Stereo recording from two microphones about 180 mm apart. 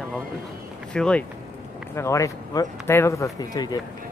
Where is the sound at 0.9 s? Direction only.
5° left (ahead or behind).